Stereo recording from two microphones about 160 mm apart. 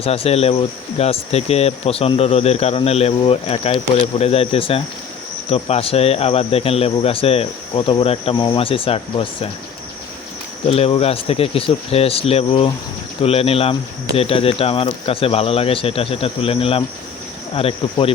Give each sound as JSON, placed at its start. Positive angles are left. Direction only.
{"t": 0.0, "sound": "speech", "side_deg": 40}
{"t": 10.7, "sound": "speech", "side_deg": 40}